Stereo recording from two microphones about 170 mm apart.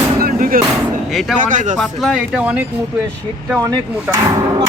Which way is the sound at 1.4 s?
50° right (ahead or behind).